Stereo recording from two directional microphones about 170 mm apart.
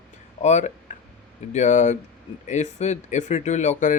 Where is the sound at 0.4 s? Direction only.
45° left (ahead or behind).